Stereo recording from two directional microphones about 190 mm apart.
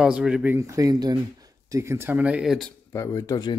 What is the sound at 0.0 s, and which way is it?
Speech, 5° right (ahead or behind).